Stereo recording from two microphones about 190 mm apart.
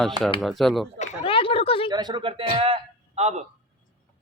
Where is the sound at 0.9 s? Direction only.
30° left (ahead or behind).